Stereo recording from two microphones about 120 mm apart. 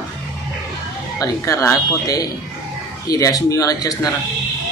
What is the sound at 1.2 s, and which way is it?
Speech, 25° left (ahead or behind).